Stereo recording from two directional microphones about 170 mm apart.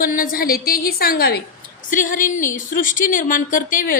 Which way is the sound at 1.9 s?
50° left (ahead or behind).